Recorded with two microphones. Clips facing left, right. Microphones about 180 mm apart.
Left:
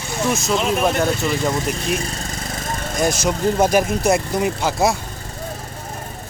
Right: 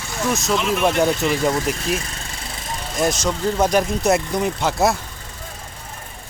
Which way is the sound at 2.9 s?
Centre (ahead or behind).